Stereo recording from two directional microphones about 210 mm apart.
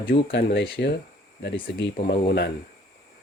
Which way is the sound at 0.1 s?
55° left (ahead or behind).